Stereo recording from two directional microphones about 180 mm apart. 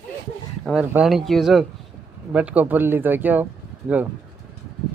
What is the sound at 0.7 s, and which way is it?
Speech, 5° right (ahead or behind).